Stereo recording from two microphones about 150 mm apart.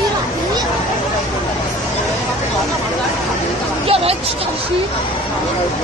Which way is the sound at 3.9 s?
40° right (ahead or behind).